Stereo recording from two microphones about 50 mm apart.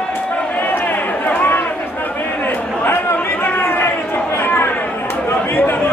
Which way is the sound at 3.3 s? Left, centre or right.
Left.